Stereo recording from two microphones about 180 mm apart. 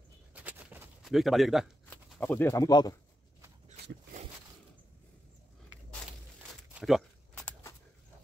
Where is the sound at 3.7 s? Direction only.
40° right (ahead or behind).